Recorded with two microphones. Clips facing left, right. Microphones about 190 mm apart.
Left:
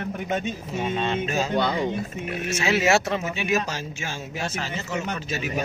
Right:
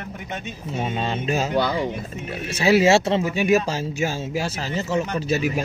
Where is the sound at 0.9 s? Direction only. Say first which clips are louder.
Right 1 dB; 35° right (ahead or behind).